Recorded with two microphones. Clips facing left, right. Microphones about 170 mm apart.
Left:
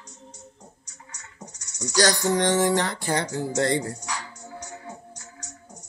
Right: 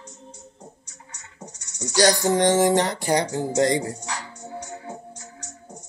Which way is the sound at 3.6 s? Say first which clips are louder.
Right 3 dB; 15° right (ahead or behind).